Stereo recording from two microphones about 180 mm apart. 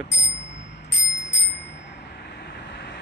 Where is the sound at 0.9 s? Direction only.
80° left.